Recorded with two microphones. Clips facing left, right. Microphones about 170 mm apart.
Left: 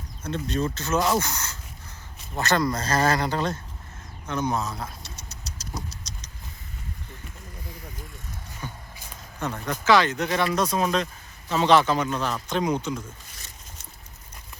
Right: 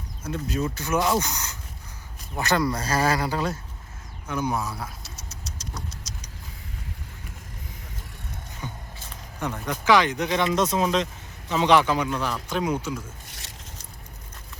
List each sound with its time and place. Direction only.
0.2 s speech: 10° right (ahead or behind)
4.3 s vehicle: 10° right (ahead or behind)
8.6 s music: 15° right (ahead or behind)
9.6 s speech: 15° right (ahead or behind)